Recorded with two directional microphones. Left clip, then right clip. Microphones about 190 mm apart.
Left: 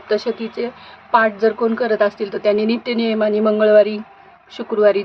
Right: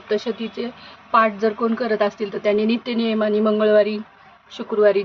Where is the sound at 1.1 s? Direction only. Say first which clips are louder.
Left 3 dB; 15° left (ahead or behind).